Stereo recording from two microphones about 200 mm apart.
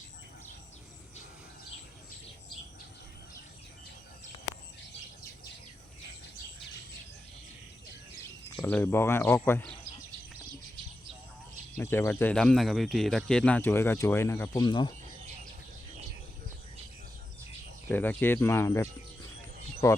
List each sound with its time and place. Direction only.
8.6 s speech: 10° left (ahead or behind)
11.8 s speech: 10° left (ahead or behind)
17.8 s speech: 10° left (ahead or behind)